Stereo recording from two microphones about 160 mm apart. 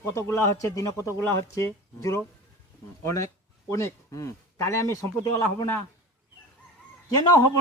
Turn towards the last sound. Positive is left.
turn(degrees=20)  # may be behind; listen again after turning